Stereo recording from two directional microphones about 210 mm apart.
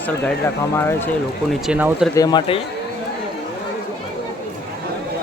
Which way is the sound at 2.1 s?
20° left (ahead or behind).